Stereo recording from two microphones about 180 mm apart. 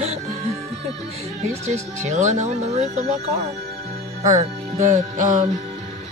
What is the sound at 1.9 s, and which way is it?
Speech, 40° right (ahead or behind).